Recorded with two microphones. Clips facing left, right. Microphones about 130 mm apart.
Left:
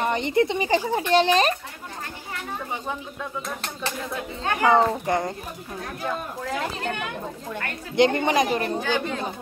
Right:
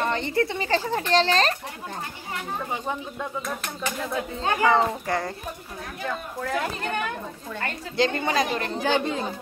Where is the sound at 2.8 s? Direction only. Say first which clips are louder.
Right 1 dB; 15° right (ahead or behind).